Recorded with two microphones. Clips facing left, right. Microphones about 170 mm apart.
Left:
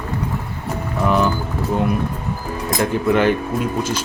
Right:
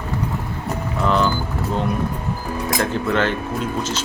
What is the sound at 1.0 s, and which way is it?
Speech, 15° left (ahead or behind).